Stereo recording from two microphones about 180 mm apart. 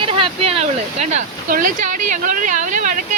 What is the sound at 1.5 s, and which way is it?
Speech, 45° right (ahead or behind).